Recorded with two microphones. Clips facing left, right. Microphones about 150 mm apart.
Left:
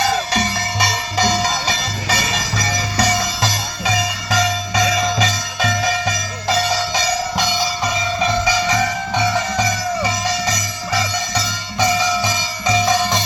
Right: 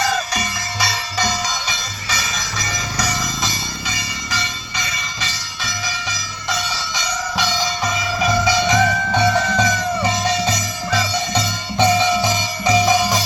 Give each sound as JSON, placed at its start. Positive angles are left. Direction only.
{"t": 2.0, "sound": "music", "side_deg": 30}
{"t": 3.5, "sound": "music", "side_deg": 90}
{"t": 9.1, "sound": "music", "side_deg": 15}
{"t": 11.9, "sound": "music", "side_deg": -15}